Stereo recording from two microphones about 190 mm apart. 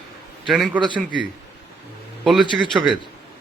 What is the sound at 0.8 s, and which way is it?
Speech, 25° right (ahead or behind).